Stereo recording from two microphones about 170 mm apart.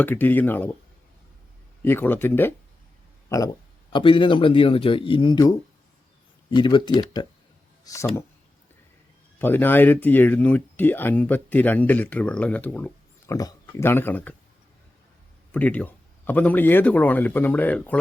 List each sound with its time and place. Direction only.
0.0 s speech: 10° left (ahead or behind)
1.8 s speech: 10° left (ahead or behind)
3.9 s speech: 30° left (ahead or behind)
9.4 s speech: 10° left (ahead or behind)
15.5 s speech: 10° left (ahead or behind)